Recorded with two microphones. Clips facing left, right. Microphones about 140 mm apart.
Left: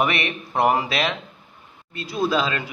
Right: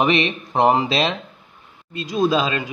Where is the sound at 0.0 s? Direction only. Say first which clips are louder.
Right 4 dB; 20° right (ahead or behind).